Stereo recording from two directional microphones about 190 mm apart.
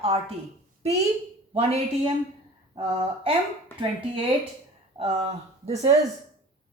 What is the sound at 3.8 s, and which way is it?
Speech, 25° right (ahead or behind).